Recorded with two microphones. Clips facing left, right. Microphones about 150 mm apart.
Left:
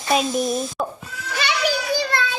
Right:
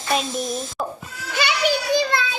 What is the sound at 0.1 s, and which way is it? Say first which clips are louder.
Speech: left 4 dB; 5° left (ahead or behind).